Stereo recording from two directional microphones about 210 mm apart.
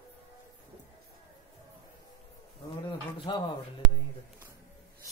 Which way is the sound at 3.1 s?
25° left (ahead or behind).